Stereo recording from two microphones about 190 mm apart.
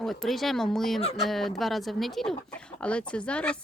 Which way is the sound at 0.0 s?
Centre (ahead or behind).